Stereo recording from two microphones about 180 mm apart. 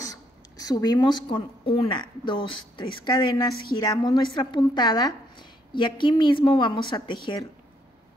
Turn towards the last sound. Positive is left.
turn(degrees=25)  # may be behind; listen again after turning